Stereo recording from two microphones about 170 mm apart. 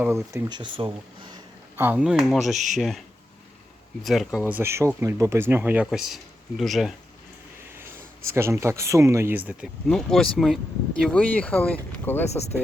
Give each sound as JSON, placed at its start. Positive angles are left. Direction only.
{"t": 0.0, "sound": "speech", "side_deg": -15}
{"t": 0.4, "sound": "speech", "side_deg": -25}
{"t": 1.7, "sound": "speech", "side_deg": -10}
{"t": 4.0, "sound": "speech", "side_deg": 0}
{"t": 7.8, "sound": "speech", "side_deg": -15}
{"t": 9.8, "sound": "speech", "side_deg": 5}
{"t": 12.3, "sound": "speech", "side_deg": 40}